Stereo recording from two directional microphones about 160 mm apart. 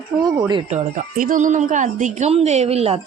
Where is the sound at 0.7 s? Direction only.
55° right (ahead or behind).